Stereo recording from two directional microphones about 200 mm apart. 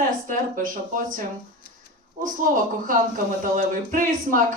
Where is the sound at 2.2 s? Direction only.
45° right (ahead or behind).